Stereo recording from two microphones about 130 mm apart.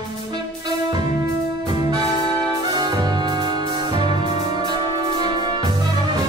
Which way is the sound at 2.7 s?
30° right (ahead or behind).